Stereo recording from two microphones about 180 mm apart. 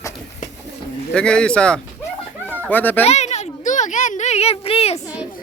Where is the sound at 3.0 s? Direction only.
35° left (ahead or behind).